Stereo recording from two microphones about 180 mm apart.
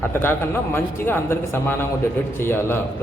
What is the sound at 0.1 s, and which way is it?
A man's voice, 10° left (ahead or behind).